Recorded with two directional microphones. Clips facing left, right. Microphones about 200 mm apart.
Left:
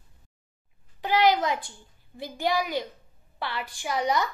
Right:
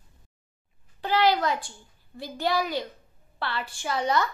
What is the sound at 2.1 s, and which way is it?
A woman's voice, 15° left (ahead or behind).